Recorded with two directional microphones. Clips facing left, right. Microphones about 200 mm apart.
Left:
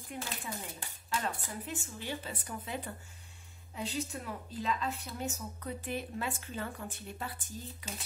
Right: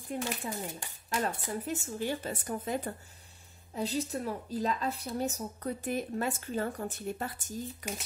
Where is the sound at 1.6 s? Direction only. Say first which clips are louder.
Right 7 dB; 40° right (ahead or behind).